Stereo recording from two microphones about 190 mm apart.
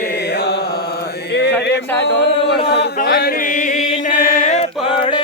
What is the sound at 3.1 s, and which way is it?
Chant, 55° left (ahead or behind).